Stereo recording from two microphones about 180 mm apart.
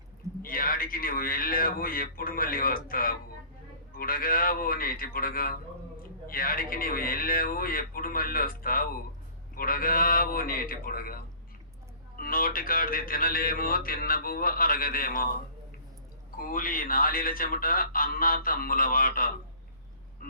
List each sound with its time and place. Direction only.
0.4 s speech: 55° left (ahead or behind)
12.2 s speech: 55° left (ahead or behind)
16.4 s speech: 50° left (ahead or behind)